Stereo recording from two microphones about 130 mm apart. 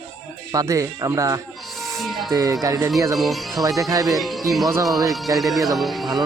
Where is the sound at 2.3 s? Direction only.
25° right (ahead or behind).